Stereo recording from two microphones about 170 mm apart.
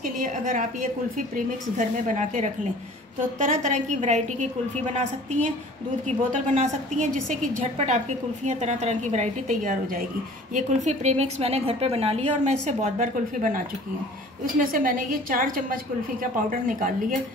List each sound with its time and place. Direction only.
0.2 s a woman's voice: 50° right (ahead or behind)
14.6 s a woman's voice: 55° right (ahead or behind)